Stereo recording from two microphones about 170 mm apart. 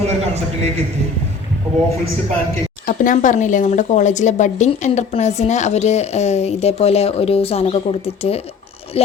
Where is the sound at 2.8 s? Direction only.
50° left (ahead or behind).